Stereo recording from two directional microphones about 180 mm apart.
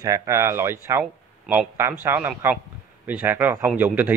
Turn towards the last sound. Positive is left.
turn(degrees=-10)  # may be behind; listen again after turning